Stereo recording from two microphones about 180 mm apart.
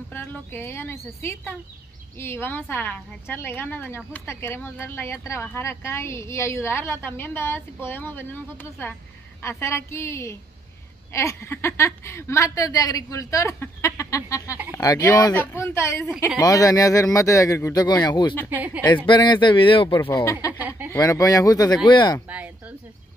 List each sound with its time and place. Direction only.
0.1 s a woman's voice: 10° left (ahead or behind)
18.5 s speech: 10° right (ahead or behind)
19.0 s speech: 25° left (ahead or behind)
20.0 s a woman's voice: 15° left (ahead or behind)
20.5 s a sound: 10° right (ahead or behind)
20.9 s a woman's voice: 20° left (ahead or behind)
22.3 s speech: 10° right (ahead or behind)